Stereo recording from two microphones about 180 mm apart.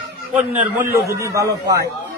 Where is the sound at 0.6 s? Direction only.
10° right (ahead or behind).